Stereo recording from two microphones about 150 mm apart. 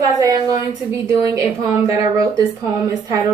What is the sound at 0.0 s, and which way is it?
A woman's voice, 25° right (ahead or behind).